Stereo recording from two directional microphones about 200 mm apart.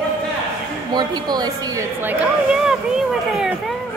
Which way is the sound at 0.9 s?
20° right (ahead or behind).